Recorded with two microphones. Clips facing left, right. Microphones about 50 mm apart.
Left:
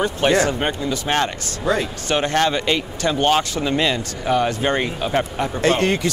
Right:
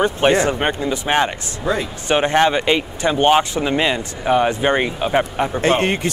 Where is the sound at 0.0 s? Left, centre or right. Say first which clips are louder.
Right 2 dB; right.